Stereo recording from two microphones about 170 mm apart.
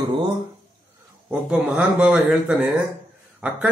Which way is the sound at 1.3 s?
5° right (ahead or behind).